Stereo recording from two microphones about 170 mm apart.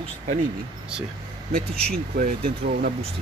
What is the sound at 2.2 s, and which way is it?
Speech, 60° right (ahead or behind).